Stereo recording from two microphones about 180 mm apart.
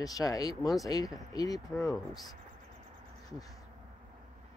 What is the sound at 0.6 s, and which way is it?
Speech, centre (ahead or behind).